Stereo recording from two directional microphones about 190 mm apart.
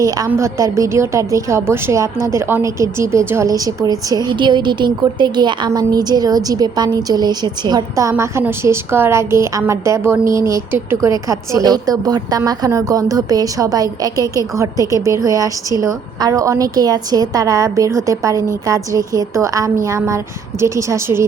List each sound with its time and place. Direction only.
0.0 s a woman's voice: 15° right (ahead or behind)